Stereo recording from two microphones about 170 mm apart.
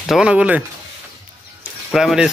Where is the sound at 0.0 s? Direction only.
5° right (ahead or behind).